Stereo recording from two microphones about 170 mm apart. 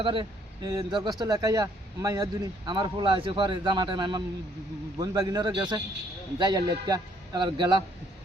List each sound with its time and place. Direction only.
0.0 s speech: 30° right (ahead or behind)